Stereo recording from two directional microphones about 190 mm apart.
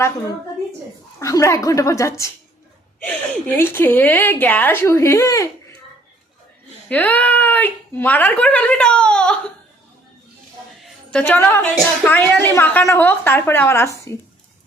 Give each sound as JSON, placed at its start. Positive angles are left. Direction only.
{"t": 1.2, "sound": "a woman's voice", "side_deg": 15}
{"t": 3.4, "sound": "a woman's voice", "side_deg": 10}
{"t": 6.8, "sound": "a woman's voice", "side_deg": 10}
{"t": 10.8, "sound": "a woman's voice", "side_deg": 5}